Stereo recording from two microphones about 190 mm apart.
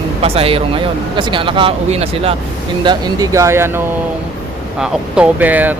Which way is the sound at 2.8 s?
20° right (ahead or behind).